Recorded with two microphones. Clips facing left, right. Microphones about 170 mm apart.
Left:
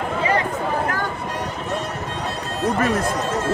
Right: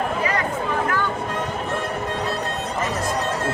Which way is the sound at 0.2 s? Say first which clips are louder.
Left 3 dB; 30° left (ahead or behind).